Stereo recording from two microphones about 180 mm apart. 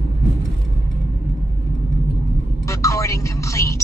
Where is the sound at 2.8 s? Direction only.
15° left (ahead or behind).